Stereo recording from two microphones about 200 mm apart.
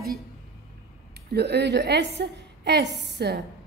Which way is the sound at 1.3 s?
55° right (ahead or behind).